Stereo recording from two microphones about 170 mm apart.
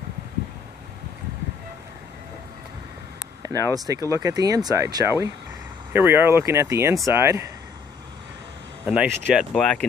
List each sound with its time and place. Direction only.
3.4 s speech: 20° right (ahead or behind)
8.8 s speech: 5° right (ahead or behind)